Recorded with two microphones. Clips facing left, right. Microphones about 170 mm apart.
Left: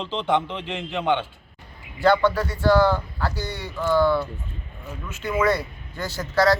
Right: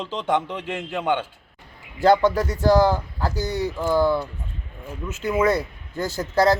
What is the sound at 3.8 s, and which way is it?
A man's voice, 15° right (ahead or behind).